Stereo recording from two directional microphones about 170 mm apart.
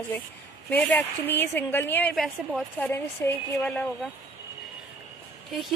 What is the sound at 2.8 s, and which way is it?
Speech, 15° left (ahead or behind).